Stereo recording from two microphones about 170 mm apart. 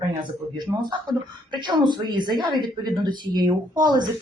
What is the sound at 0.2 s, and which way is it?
Speech, 25° right (ahead or behind).